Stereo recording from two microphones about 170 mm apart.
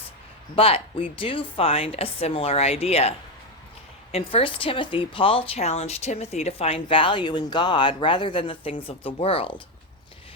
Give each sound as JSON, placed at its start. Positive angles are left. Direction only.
{"t": 0.5, "sound": "speech", "side_deg": 35}